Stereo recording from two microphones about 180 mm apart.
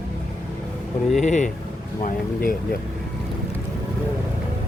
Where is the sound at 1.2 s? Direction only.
40° left (ahead or behind).